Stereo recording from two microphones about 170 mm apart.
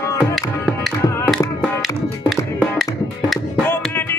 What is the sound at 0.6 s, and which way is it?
Music, centre (ahead or behind).